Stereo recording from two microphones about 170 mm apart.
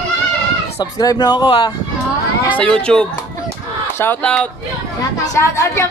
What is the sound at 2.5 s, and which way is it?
A woman's voice, 5° left (ahead or behind).